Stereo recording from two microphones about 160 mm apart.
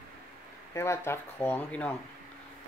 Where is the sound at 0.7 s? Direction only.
15° left (ahead or behind).